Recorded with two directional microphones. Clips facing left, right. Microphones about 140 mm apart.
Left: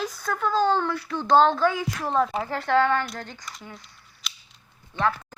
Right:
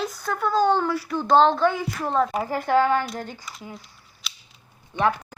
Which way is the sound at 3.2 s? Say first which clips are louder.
Right 3 dB; 10° right (ahead or behind).